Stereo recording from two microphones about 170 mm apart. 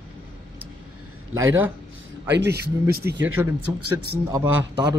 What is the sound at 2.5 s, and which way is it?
Speech, 70° right (ahead or behind).